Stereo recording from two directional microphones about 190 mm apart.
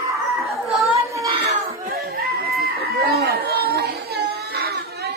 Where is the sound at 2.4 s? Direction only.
55° right (ahead or behind).